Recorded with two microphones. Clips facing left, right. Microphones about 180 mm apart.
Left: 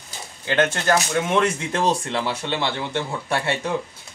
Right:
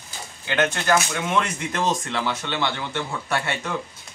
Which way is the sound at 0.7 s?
30° left (ahead or behind).